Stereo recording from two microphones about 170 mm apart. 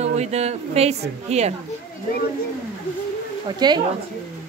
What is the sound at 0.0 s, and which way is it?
A woman's voice, 40° right (ahead or behind).